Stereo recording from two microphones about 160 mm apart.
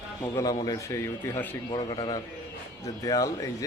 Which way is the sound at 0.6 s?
20° left (ahead or behind).